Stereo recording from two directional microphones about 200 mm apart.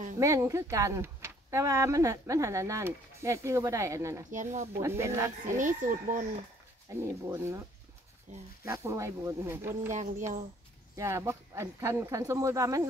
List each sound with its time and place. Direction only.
0.2 s speech: 15° right (ahead or behind)
4.3 s speech: 40° right (ahead or behind)
4.7 s speech: 15° right (ahead or behind)
5.6 s speech: 40° right (ahead or behind)
6.9 s speech: 10° right (ahead or behind)
8.3 s speech: 35° right (ahead or behind)
8.6 s speech: 15° right (ahead or behind)
9.8 s speech: 35° right (ahead or behind)
11.0 s speech: 15° right (ahead or behind)